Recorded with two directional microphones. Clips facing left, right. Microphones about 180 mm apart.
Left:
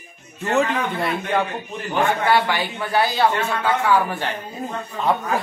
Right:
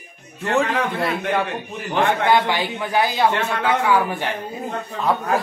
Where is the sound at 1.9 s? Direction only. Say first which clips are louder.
Right 1 dB; 70° right (ahead or behind).